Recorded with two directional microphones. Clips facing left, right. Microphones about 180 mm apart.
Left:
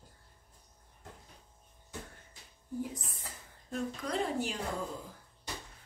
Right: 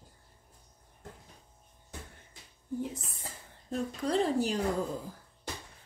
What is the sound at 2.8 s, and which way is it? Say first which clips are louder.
A woman's voice: right 2 dB; 25° right (ahead or behind).